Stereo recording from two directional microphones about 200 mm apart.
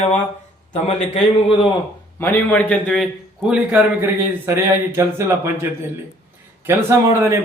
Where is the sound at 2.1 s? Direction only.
10° left (ahead or behind); by 5.6 s 10° right (ahead or behind).